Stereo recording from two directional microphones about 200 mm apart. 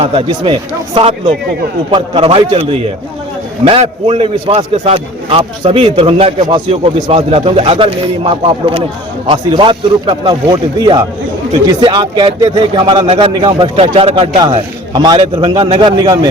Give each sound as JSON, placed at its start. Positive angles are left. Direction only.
{"t": 0.0, "sound": "a man's voice", "side_deg": -25}